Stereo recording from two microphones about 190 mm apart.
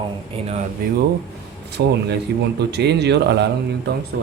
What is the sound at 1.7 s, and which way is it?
A man's voice, 60° right (ahead or behind).